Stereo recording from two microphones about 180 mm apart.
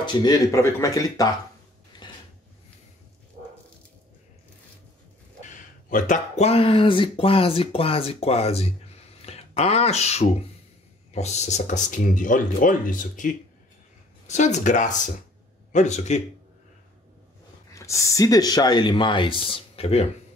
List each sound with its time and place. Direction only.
0.0 s speech: 25° left (ahead or behind)
5.5 s speech: 45° left (ahead or behind)
17.6 s speech: 15° left (ahead or behind); by 20.1 s 35° left (ahead or behind)